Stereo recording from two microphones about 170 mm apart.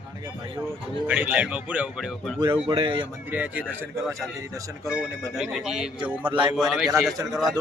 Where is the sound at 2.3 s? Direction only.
30° right (ahead or behind).